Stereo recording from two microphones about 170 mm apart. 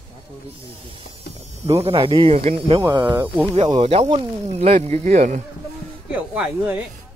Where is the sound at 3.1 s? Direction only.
10° right (ahead or behind).